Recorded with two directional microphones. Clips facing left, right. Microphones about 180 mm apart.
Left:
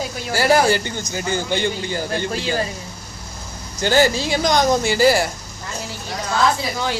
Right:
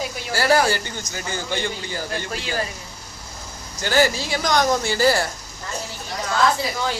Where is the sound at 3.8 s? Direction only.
25° left (ahead or behind).